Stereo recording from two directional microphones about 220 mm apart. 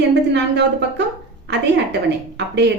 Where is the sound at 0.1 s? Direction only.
50° right (ahead or behind).